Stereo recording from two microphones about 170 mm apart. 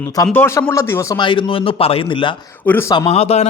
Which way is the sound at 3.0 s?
35° left (ahead or behind).